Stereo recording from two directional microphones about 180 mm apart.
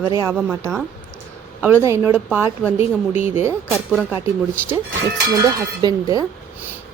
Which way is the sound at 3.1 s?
40° left (ahead or behind).